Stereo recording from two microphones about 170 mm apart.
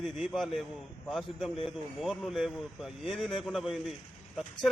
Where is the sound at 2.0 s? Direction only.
Centre (ahead or behind).